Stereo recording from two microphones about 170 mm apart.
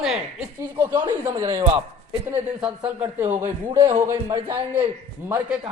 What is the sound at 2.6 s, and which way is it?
A man's voice, 10° right (ahead or behind).